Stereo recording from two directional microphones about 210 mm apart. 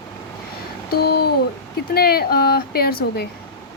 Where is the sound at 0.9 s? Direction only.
50° left (ahead or behind).